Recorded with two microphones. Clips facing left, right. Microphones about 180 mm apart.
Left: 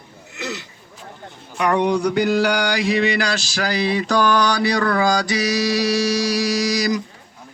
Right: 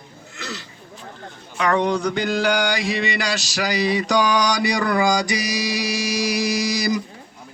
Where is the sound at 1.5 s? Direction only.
10° left (ahead or behind).